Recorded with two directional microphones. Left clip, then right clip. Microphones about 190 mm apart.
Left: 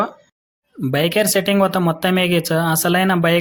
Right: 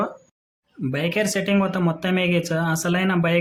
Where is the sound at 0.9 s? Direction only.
30° left (ahead or behind).